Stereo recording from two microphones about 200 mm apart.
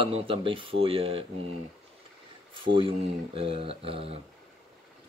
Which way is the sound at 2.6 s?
25° right (ahead or behind).